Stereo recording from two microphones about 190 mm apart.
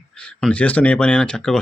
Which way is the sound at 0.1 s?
5° left (ahead or behind).